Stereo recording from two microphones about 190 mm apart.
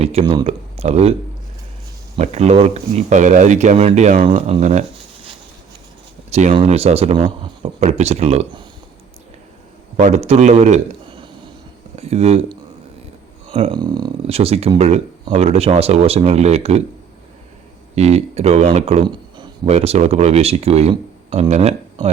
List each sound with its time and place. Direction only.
0.0 s speech: 30° right (ahead or behind)
2.1 s speech: 35° right (ahead or behind)
4.3 s speech: 30° right (ahead or behind)
6.5 s speech: 35° right (ahead or behind)
10.0 s a man's voice: 35° right (ahead or behind)
13.5 s speech: 25° right (ahead or behind)
17.9 s speech: 35° right (ahead or behind)
19.0 s a sound: 25° right (ahead or behind)
19.6 s speech: 35° right (ahead or behind)